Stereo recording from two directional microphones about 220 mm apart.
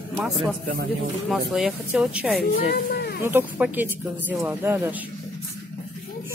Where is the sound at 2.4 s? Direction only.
45° left (ahead or behind).